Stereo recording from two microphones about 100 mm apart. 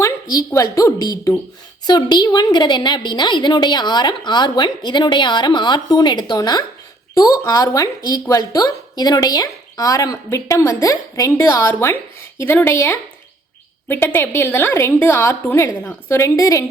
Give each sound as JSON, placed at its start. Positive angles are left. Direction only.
{"t": 0.0, "sound": "a woman's voice", "side_deg": 35}